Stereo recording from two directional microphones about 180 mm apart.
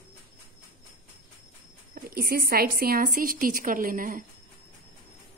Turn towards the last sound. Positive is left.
turn(degrees=-50)  # may be behind; listen again after turning